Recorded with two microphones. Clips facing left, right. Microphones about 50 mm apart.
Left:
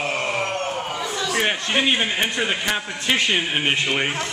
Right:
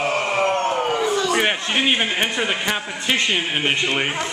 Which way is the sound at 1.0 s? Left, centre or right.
Centre.